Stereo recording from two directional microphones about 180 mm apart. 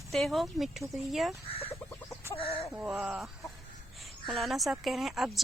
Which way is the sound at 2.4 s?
30° left (ahead or behind).